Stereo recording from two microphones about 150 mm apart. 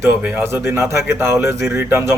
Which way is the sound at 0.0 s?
15° right (ahead or behind).